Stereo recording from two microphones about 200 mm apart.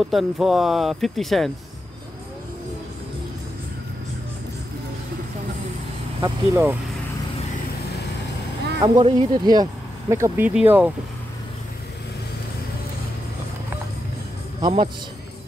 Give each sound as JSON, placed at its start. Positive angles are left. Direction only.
{"t": 0.0, "sound": "speech", "side_deg": 0}
{"t": 6.2, "sound": "speech", "side_deg": -10}
{"t": 8.8, "sound": "speech", "side_deg": -25}
{"t": 14.6, "sound": "a man's voice", "side_deg": -25}